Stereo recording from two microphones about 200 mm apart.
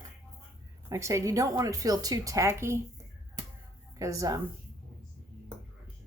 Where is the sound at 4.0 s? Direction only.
15° right (ahead or behind).